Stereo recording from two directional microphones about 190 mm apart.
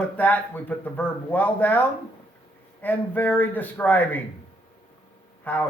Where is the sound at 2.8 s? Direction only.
10° left (ahead or behind).